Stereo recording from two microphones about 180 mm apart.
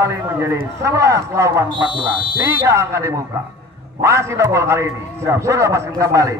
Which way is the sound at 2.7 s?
15° right (ahead or behind).